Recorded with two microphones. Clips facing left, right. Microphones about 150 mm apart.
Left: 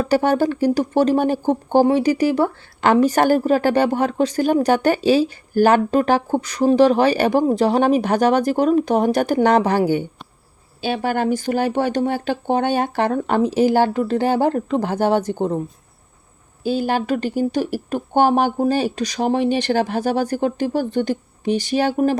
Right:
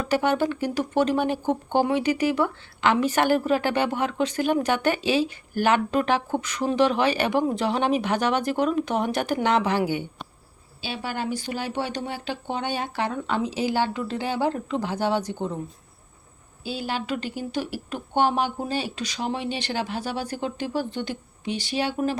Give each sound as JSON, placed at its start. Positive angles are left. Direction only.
{"t": 0.0, "sound": "a woman's voice", "side_deg": 40}
{"t": 16.6, "sound": "a woman's voice", "side_deg": 45}